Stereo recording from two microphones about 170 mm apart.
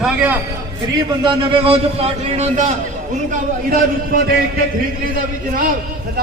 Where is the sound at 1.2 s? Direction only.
30° right (ahead or behind).